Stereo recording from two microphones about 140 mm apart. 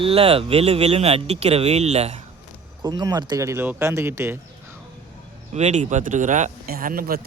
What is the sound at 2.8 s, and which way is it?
Speech, 30° right (ahead or behind).